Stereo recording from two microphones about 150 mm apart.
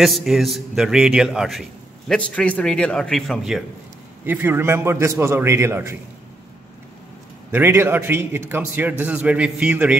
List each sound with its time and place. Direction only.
0.0 s a man's voice: centre (ahead or behind)
4.3 s a man's voice: 15° right (ahead or behind)
7.5 s a man's voice: 15° right (ahead or behind)